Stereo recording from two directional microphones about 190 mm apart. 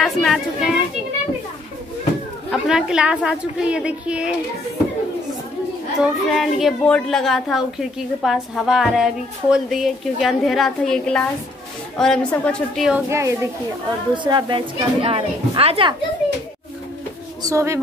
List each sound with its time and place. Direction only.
0.0 s a woman's voice: centre (ahead or behind)
2.5 s a woman's voice: 5° right (ahead or behind)
5.9 s a woman's voice: centre (ahead or behind)
13.1 s a child's voice: 15° right (ahead or behind)
17.5 s speech: 15° right (ahead or behind)